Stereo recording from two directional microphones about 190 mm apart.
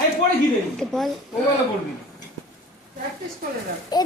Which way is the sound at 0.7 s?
Centre (ahead or behind).